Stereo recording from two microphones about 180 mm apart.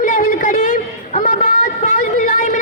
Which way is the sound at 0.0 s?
50° left (ahead or behind).